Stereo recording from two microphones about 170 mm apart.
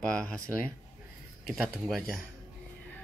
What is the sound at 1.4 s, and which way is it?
Speech, centre (ahead or behind).